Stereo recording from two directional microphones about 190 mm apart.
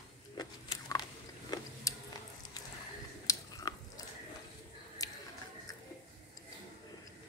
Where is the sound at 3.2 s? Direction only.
20° left (ahead or behind).